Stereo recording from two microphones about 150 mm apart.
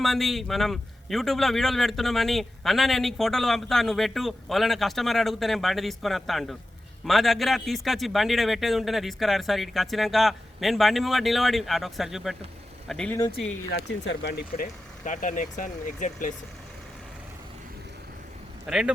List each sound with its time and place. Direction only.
0.0 s a man's voice: centre (ahead or behind)
14.3 s speech: 70° left (ahead or behind)
18.6 s a man's voice: 5° right (ahead or behind)